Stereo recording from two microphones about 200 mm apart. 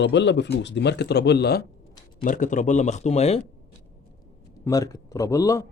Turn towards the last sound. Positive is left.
turn(degrees=15)  # may be behind; listen again after turning